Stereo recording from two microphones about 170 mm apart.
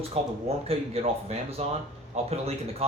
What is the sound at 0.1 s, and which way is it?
Speech, 35° right (ahead or behind).